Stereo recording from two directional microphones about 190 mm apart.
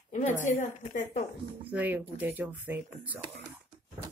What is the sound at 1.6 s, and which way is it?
Speech, 10° right (ahead or behind).